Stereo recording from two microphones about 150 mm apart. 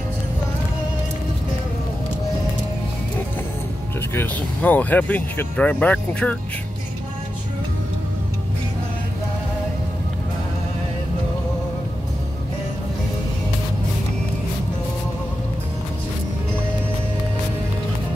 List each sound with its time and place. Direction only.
4.1 s speech: 15° left (ahead or behind)